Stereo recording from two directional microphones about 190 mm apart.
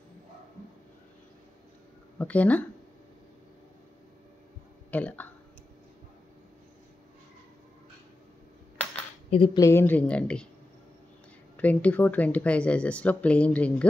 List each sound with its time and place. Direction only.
2.1 s speech: 10° left (ahead or behind)
4.9 s speech: 10° left (ahead or behind)
9.3 s speech: 30° left (ahead or behind)
9.6 s speech: 15° left (ahead or behind)
11.5 s speech: 10° left (ahead or behind)